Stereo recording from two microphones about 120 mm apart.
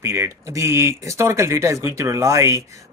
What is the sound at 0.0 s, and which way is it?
Speech, 20° right (ahead or behind).